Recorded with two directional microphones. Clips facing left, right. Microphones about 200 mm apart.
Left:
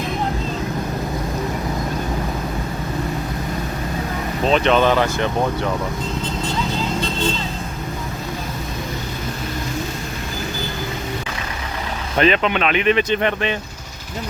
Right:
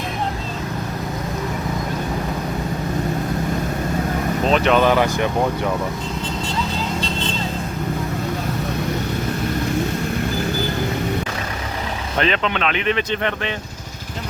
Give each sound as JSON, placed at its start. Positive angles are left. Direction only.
{"t": 4.4, "sound": "speech", "side_deg": -5}
{"t": 12.2, "sound": "speech", "side_deg": 10}